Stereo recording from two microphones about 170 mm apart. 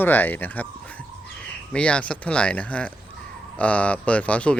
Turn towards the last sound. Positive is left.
turn(degrees=5)  # may be behind; listen again after turning